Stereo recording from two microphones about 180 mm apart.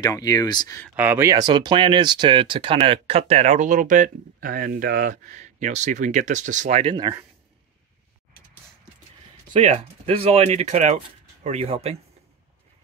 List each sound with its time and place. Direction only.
0.0 s speech: 20° left (ahead or behind)
0.9 s speech: 10° right (ahead or behind); by 6.8 s 45° right (ahead or behind)
6.8 s speech: 25° right (ahead or behind)
9.5 s speech: 40° right (ahead or behind)